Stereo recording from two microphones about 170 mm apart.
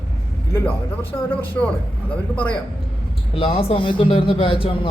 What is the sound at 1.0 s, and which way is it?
Speech, 10° left (ahead or behind).